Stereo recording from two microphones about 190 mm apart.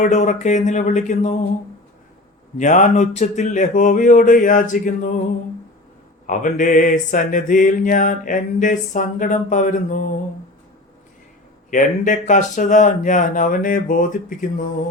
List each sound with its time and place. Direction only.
0.0 s speech: 40° left (ahead or behind)
2.6 s speech: 40° left (ahead or behind)
6.2 s mantra: 45° left (ahead or behind)
11.7 s mantra: 40° left (ahead or behind)